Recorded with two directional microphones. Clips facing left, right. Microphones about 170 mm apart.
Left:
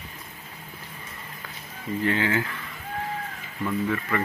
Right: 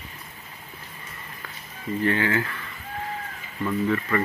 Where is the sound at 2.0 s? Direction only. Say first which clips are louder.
Right 1 dB; 15° left (ahead or behind).